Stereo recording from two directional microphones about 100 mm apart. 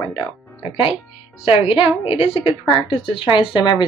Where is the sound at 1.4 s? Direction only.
80° left.